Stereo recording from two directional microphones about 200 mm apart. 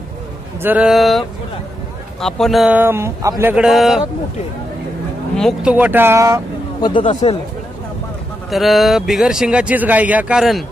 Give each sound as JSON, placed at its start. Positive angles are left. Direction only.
{"t": 0.6, "sound": "speech", "side_deg": -10}
{"t": 2.2, "sound": "speech", "side_deg": 0}
{"t": 5.3, "sound": "speech", "side_deg": 0}
{"t": 6.8, "sound": "speech", "side_deg": 25}
{"t": 8.5, "sound": "speech", "side_deg": 0}